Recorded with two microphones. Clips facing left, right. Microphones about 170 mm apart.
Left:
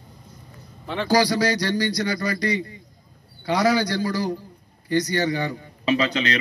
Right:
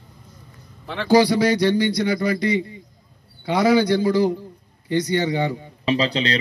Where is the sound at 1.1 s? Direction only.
25° right (ahead or behind).